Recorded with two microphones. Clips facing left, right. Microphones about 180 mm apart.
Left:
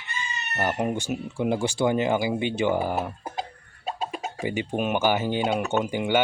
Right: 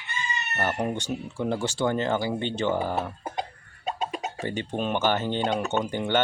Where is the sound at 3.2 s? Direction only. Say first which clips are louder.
Right 1 dB; 5° left (ahead or behind).